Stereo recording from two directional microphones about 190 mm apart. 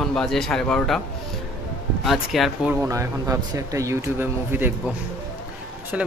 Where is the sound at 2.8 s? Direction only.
15° right (ahead or behind).